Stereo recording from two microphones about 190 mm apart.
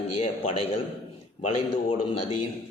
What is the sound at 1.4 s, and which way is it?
A man's voice, 30° left (ahead or behind).